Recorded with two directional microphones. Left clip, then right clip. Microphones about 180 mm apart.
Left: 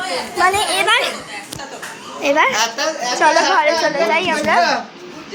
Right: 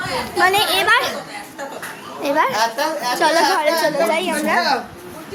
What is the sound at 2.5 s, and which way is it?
A child's voice, 10° right (ahead or behind).